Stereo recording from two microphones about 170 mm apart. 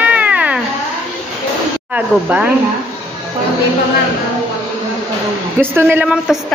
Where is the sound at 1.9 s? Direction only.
10° right (ahead or behind).